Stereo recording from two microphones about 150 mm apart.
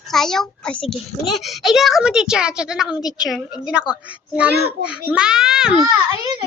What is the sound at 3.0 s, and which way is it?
Speech, 25° left (ahead or behind).